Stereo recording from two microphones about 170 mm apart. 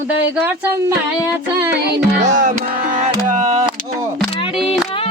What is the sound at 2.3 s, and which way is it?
Music, 50° right (ahead or behind).